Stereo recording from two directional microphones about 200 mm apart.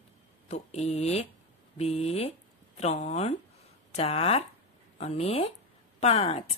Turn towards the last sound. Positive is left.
turn(degrees=30)  # may be behind; listen again after turning